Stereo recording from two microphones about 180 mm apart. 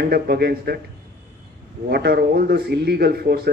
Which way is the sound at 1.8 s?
60° right (ahead or behind).